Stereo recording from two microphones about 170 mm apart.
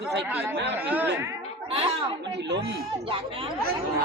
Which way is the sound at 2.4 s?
90° right.